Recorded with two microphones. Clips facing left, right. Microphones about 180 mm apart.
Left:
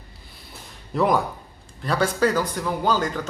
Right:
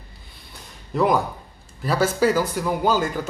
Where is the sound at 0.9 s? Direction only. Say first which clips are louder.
Right 1 dB; centre (ahead or behind).